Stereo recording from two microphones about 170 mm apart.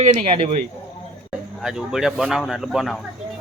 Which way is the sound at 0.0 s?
45° right (ahead or behind).